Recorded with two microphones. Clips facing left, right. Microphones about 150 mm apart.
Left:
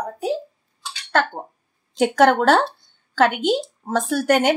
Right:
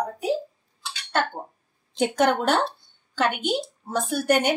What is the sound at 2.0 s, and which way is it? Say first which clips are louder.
A woman's voice: left 5 dB; 90° left.